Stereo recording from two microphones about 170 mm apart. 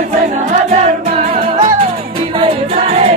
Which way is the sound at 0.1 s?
40° right (ahead or behind).